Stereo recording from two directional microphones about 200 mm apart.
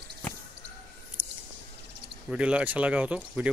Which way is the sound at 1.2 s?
10° right (ahead or behind).